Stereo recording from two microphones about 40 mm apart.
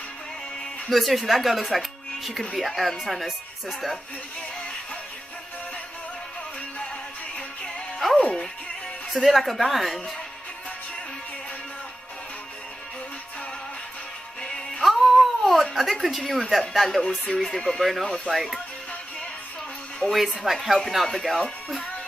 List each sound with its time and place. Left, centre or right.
0.8 s speech: centre
8.2 s music: left
9.1 s speech: centre
14.8 s a sound: centre
17.3 s speech: centre
18.0 s speech: left
18.3 s speech: centre
20.0 s speech: centre